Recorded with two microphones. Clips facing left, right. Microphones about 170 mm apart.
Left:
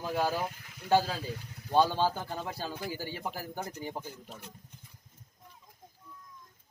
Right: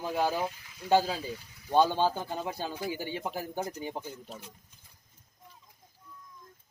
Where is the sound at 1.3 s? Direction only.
60° left (ahead or behind).